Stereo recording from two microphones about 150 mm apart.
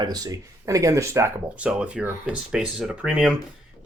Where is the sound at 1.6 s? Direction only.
10° right (ahead or behind).